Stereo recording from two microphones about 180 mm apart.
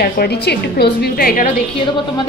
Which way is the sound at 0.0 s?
65° left (ahead or behind).